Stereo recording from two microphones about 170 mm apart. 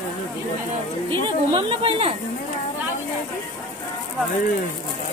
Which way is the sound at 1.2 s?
35° right (ahead or behind).